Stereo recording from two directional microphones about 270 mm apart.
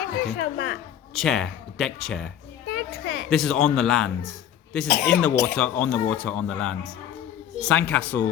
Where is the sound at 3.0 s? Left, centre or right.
Left.